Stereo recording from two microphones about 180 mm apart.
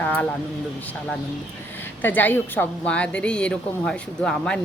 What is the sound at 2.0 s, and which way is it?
A woman's voice, 10° left (ahead or behind).